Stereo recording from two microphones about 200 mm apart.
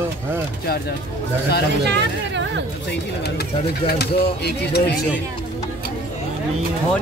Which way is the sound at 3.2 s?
50° left (ahead or behind).